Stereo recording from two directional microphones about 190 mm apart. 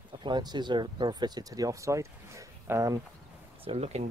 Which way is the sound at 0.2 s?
25° right (ahead or behind).